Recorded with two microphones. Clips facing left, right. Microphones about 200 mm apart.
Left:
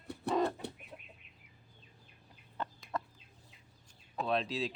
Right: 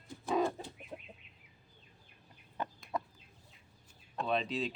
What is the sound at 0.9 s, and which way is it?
Chicken, 35° right (ahead or behind).